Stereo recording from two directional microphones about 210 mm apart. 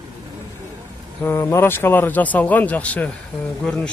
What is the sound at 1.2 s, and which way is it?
A man's voice, 15° left (ahead or behind).